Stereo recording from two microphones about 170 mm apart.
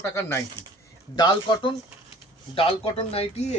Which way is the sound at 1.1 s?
25° left (ahead or behind).